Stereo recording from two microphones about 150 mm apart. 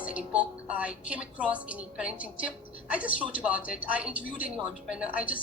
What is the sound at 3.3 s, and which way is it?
A woman's voice, 10° right (ahead or behind).